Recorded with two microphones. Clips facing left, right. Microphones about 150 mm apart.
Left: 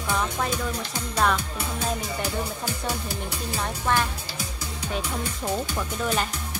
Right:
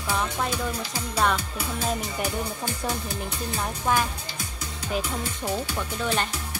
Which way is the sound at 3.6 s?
5° right (ahead or behind).